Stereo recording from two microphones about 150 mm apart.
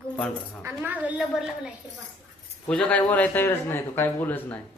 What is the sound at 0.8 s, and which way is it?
Speech, 10° right (ahead or behind).